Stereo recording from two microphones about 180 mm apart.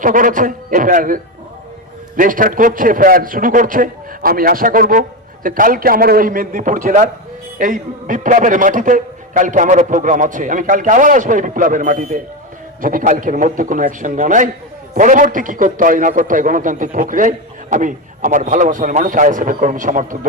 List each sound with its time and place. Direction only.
0.0 s a man's voice: 50° right (ahead or behind)